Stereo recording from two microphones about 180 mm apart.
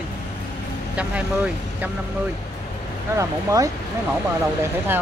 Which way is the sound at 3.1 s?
15° right (ahead or behind).